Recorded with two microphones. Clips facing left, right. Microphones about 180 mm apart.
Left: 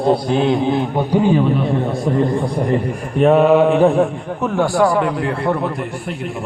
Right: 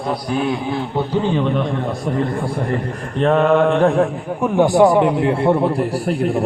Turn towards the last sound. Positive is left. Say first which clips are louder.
# right 7 dB
turn(degrees=-35)  # may be behind; listen again after turning